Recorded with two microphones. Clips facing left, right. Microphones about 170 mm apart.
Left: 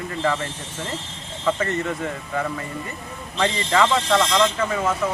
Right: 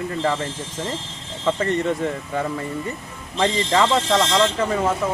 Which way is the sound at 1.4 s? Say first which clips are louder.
Right 2 dB; 30° right (ahead or behind).